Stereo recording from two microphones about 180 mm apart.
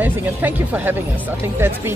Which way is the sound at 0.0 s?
10° right (ahead or behind).